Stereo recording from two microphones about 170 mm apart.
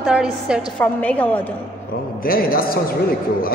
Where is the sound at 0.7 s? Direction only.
10° left (ahead or behind).